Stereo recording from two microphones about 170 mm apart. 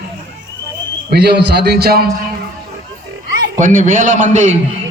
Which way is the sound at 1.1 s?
75° right (ahead or behind).